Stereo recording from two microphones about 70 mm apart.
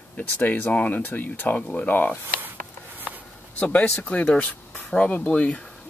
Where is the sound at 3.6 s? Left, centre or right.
Left.